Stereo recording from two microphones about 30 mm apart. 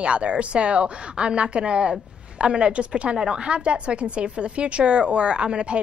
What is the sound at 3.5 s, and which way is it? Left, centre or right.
Speech, right.